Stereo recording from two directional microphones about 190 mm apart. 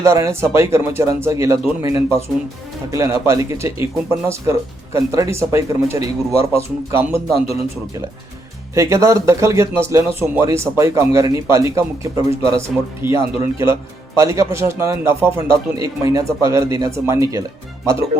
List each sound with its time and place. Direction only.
0.0 s speech: 15° right (ahead or behind)
8.7 s speech: 15° right (ahead or behind)